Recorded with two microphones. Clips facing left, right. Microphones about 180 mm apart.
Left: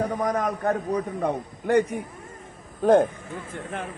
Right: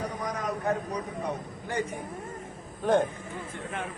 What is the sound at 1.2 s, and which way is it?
Speech, 60° left (ahead or behind).